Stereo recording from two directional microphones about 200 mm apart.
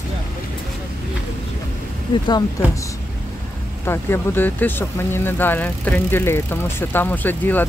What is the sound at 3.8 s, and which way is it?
Speech, 10° left (ahead or behind).